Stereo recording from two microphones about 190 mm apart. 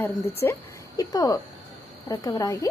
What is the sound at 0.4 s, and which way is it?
A woman's voice, 15° left (ahead or behind).